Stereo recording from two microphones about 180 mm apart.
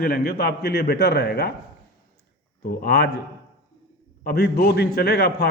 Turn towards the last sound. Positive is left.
turn(degrees=60)  # may be behind; listen again after turning